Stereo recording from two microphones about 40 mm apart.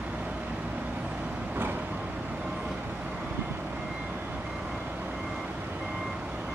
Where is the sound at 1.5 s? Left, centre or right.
Right.